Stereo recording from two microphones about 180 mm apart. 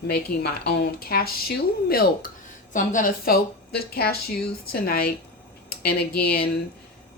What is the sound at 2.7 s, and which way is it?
Speech, 45° left (ahead or behind).